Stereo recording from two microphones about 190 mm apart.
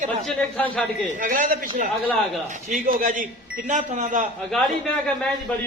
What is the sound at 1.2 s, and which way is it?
A man's voice, 45° right (ahead or behind).